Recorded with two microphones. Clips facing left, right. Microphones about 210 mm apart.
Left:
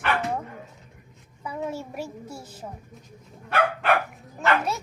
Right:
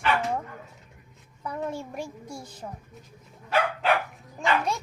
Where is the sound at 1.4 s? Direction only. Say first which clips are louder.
Left 1 dB; 5° left (ahead or behind).